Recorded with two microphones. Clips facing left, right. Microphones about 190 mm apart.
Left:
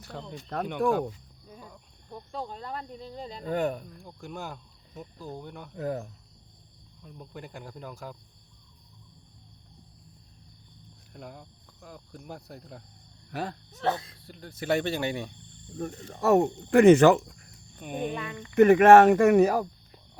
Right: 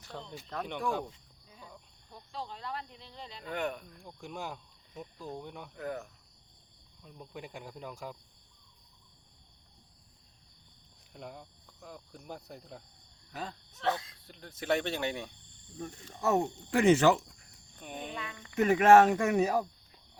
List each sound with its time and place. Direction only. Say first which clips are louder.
0.1 s speech: left 4 dB; centre (ahead or behind)
0.8 s speech: left 9 dB; 55° left (ahead or behind)
2.0 s speech: left 6 dB; 50° left (ahead or behind)
3.9 s speech: left 3 dB; 5° left (ahead or behind)
5.7 s speech: left 7 dB; 30° left (ahead or behind)
7.0 s speech: left 2 dB; centre (ahead or behind)
11.1 s speech: left 1 dB; centre (ahead or behind)
13.3 s speech: left 7 dB; 65° left (ahead or behind)
13.8 s speech: left 4 dB; 30° left (ahead or behind)
14.3 s speech: left 3 dB; 5° left (ahead or behind)
15.8 s speech: left 5 dB; 60° left (ahead or behind)
17.7 s speech: left 7 dB; 10° left (ahead or behind)
18.5 s speech: left 6 dB; 60° left (ahead or behind)